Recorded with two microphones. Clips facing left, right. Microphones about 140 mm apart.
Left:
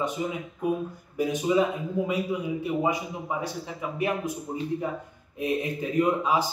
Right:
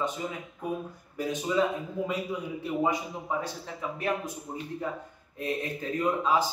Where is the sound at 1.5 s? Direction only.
10° left (ahead or behind).